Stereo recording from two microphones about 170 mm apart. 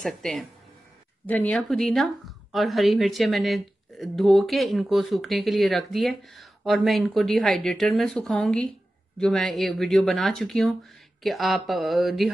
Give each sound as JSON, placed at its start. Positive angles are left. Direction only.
{"t": 0.0, "sound": "speech", "side_deg": 0}